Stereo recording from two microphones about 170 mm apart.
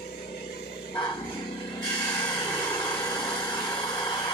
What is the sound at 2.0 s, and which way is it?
Vehicle, 15° left (ahead or behind).